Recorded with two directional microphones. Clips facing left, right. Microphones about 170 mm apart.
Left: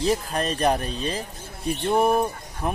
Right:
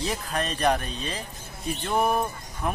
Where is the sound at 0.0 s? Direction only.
35° left (ahead or behind).